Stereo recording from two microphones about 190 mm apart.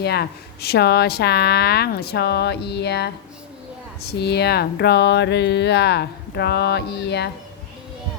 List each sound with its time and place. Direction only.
0.0 s a woman's voice: 55° left (ahead or behind)
4.2 s a woman's voice: 60° left (ahead or behind)